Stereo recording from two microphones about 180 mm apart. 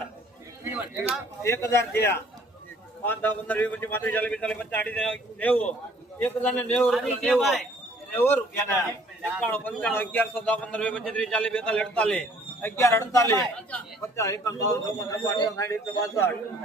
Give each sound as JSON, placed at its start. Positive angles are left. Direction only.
{"t": 0.6, "sound": "a sound", "side_deg": -10}
{"t": 1.4, "sound": "a man's voice", "side_deg": 15}
{"t": 8.1, "sound": "a man's voice", "side_deg": 15}